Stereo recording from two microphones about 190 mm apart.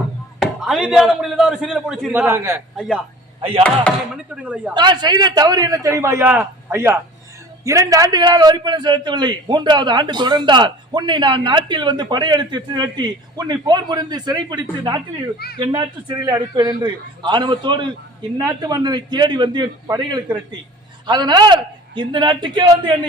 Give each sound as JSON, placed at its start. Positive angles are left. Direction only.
{"t": 0.3, "sound": "speech", "side_deg": 0}
{"t": 2.2, "sound": "a man's voice", "side_deg": -15}
{"t": 2.7, "sound": "a man's voice", "side_deg": 0}
{"t": 4.4, "sound": "a man's voice", "side_deg": -5}
{"t": 4.7, "sound": "a man's voice", "side_deg": -25}